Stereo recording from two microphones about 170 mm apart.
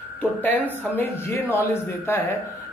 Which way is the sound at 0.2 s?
10° left (ahead or behind).